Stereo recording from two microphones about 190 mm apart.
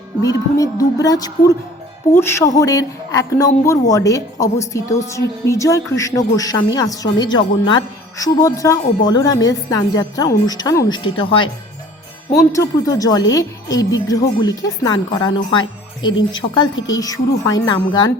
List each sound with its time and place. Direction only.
0.2 s a woman's voice: 20° left (ahead or behind)
12.5 s a woman's voice: 15° left (ahead or behind)